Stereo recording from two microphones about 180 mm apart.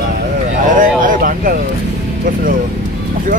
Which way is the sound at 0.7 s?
50° right (ahead or behind).